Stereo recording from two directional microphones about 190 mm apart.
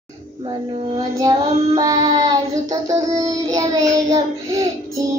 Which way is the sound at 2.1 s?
20° right (ahead or behind).